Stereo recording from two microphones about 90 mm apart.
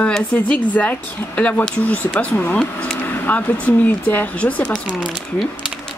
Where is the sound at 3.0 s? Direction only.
20° left (ahead or behind).